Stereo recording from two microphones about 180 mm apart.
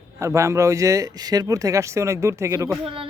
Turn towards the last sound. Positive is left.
turn(degrees=-30)  # may be behind; listen again after turning